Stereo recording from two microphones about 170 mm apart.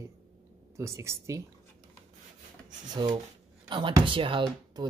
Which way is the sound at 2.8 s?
25° right (ahead or behind).